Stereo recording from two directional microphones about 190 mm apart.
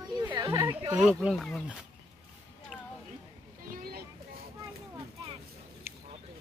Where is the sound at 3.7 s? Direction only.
50° right (ahead or behind).